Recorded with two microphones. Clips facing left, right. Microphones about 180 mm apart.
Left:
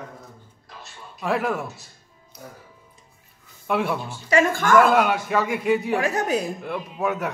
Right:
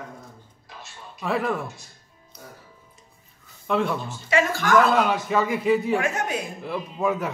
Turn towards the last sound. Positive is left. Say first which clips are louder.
# right 1 dB
turn(degrees=0)  # may be behind; listen again after turning